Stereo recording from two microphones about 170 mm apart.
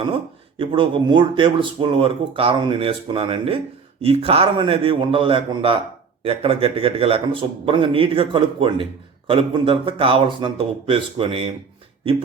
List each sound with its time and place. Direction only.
0.6 s speech: 30° right (ahead or behind)